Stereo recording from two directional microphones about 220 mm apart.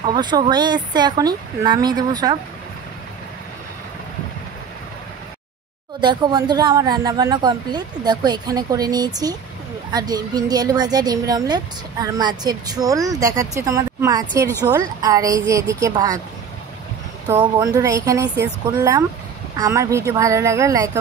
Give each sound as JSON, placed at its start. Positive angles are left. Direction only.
{"t": 0.1, "sound": "speech", "side_deg": -20}
{"t": 5.9, "sound": "a woman's voice", "side_deg": -20}
{"t": 17.4, "sound": "a woman's voice", "side_deg": -15}